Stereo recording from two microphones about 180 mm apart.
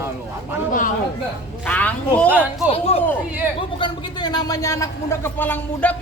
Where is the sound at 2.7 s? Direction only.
35° left (ahead or behind).